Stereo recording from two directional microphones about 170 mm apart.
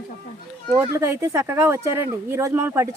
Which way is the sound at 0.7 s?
15° right (ahead or behind).